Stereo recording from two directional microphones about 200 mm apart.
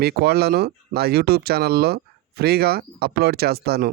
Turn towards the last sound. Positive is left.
turn(degrees=-50)  # may be behind; listen again after turning